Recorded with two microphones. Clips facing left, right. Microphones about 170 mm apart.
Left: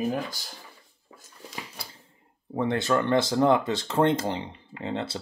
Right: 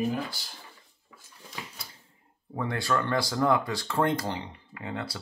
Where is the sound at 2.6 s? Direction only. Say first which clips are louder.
Left 4 dB; 20° left (ahead or behind).